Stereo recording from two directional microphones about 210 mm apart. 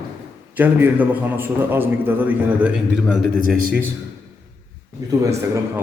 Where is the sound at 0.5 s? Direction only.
10° right (ahead or behind).